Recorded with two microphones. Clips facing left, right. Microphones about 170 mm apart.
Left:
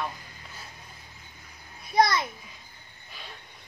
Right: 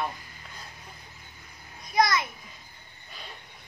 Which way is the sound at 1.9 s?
30° left (ahead or behind).